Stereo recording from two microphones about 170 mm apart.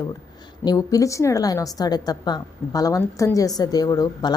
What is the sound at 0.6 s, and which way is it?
A woman's voice, 20° left (ahead or behind).